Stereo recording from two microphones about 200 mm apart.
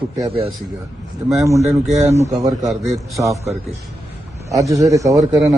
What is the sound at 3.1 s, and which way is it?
A man's voice, 15° right (ahead or behind).